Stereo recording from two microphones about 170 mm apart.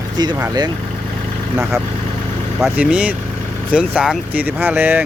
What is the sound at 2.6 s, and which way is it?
Speech, 5° right (ahead or behind).